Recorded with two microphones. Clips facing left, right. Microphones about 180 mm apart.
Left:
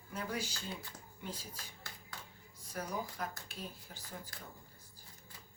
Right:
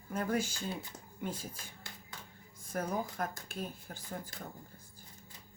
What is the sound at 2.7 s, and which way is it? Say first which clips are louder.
Speech: right 5 dB; 50° right (ahead or behind).